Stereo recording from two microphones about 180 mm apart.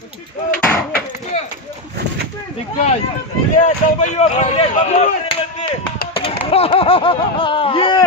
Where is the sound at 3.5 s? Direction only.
40° left (ahead or behind).